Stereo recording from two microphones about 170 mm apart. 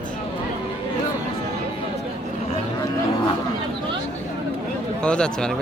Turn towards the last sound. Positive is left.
turn(degrees=5)  # may be behind; listen again after turning